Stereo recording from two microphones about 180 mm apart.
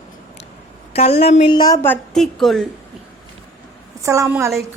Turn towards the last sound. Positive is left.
turn(degrees=-15)  # may be behind; listen again after turning